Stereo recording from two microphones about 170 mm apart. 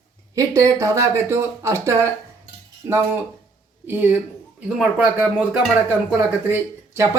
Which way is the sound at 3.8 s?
10° right (ahead or behind).